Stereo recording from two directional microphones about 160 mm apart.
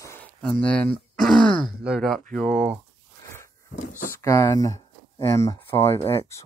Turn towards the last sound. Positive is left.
turn(degrees=15)  # may be behind; listen again after turning